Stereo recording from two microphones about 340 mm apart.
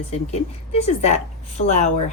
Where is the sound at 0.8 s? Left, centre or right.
Centre.